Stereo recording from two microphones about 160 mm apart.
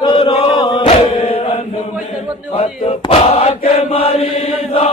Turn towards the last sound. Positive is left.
turn(degrees=40)  # may be behind; listen again after turning